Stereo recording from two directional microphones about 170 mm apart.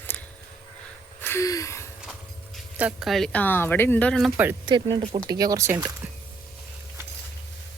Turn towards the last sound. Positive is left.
turn(degrees=-15)  # may be behind; listen again after turning